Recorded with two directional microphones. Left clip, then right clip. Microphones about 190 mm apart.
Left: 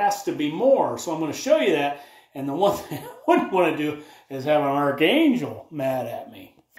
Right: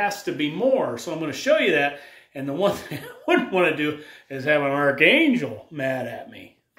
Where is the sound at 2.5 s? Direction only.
10° right (ahead or behind).